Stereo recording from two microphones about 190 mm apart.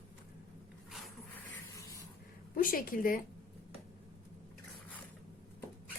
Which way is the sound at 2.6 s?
45° left (ahead or behind).